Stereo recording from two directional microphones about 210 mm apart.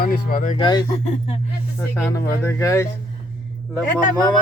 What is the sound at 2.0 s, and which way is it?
Speech, 10° left (ahead or behind).